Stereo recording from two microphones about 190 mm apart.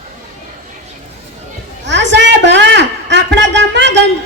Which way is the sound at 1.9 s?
70° right (ahead or behind).